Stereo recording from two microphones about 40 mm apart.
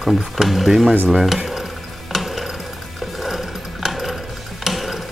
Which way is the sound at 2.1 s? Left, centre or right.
Centre.